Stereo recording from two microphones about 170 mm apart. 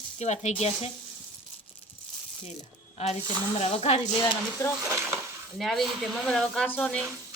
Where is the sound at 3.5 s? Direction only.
40° left (ahead or behind).